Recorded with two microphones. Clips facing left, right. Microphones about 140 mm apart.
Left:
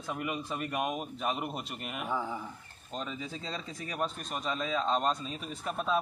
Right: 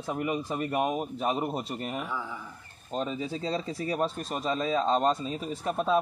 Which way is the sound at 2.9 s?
30° right (ahead or behind).